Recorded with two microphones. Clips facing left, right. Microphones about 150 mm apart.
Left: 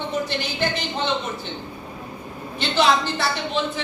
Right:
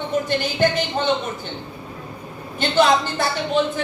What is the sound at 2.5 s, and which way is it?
A woman's voice, 50° right (ahead or behind).